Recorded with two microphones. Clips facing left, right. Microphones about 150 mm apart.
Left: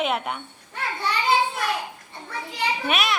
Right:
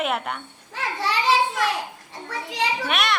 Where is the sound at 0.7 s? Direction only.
90° right.